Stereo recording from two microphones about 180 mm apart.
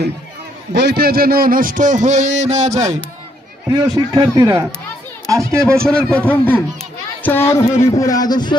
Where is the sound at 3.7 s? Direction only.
20° right (ahead or behind).